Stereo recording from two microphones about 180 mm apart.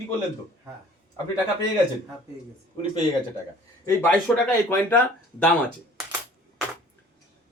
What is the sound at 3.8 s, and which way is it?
Speech, 10° left (ahead or behind).